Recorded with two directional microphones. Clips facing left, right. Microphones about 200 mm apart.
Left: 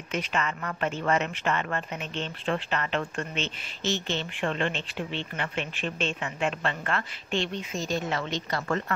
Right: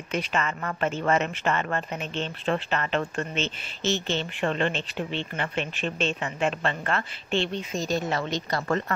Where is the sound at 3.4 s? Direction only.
25° right (ahead or behind).